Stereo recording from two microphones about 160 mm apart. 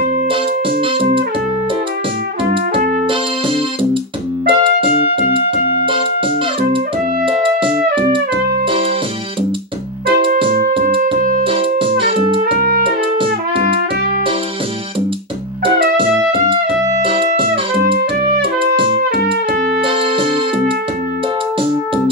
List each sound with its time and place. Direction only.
4.5 s music: 30° right (ahead or behind)
7.2 s music: 35° right (ahead or behind)
11.1 s music: 60° right (ahead or behind)
11.4 s keyboard: 35° right (ahead or behind)
12.4 s music: 65° right (ahead or behind)
16.0 s music: 35° right (ahead or behind)